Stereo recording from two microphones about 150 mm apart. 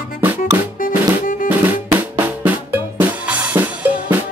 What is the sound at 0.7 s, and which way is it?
Music, 65° left (ahead or behind).